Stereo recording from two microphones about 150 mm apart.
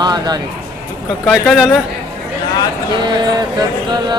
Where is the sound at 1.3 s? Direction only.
Centre (ahead or behind).